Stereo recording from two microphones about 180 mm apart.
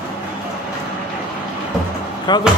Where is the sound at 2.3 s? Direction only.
25° left (ahead or behind).